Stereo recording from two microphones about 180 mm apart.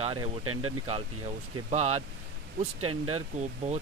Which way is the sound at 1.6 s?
40° right (ahead or behind).